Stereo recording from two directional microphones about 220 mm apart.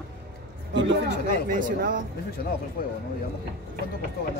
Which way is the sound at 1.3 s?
40° right (ahead or behind).